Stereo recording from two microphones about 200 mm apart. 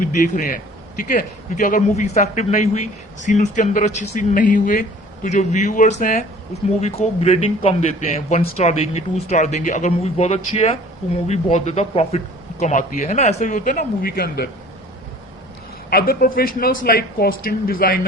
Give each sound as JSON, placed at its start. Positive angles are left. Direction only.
{"t": 0.0, "sound": "a man's voice", "side_deg": 40}
{"t": 15.9, "sound": "speech", "side_deg": 50}